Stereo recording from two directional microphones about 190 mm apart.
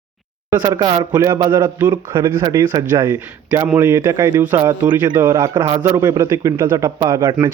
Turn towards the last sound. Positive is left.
turn(degrees=-15)  # may be behind; listen again after turning